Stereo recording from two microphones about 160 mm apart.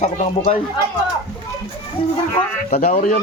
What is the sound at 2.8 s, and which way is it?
Speech, 50° left (ahead or behind).